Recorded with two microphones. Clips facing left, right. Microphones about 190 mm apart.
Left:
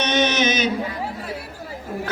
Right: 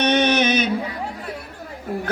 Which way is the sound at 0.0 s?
55° right (ahead or behind).